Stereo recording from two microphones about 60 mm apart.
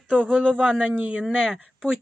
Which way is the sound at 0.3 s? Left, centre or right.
Centre.